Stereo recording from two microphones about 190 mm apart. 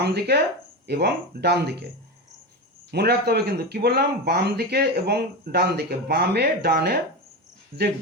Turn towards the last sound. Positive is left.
turn(degrees=-55)  # may be behind; listen again after turning